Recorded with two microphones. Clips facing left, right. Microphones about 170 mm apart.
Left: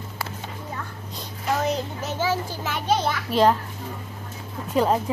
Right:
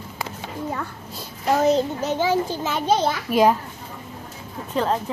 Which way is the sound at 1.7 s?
20° right (ahead or behind).